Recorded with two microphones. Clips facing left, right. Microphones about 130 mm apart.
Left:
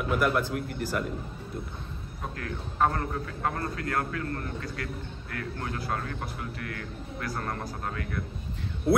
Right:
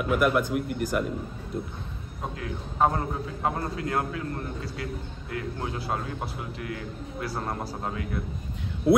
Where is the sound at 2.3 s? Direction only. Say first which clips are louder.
Right 2 dB; 15° right (ahead or behind).